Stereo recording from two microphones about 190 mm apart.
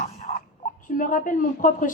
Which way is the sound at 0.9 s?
45° left (ahead or behind).